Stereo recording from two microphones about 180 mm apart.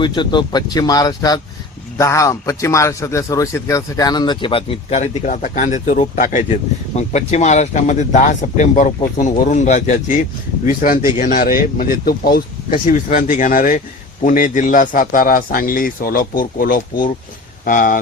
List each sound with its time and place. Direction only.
0.0 s a man's voice: 25° left (ahead or behind); by 17.9 s 50° left (ahead or behind)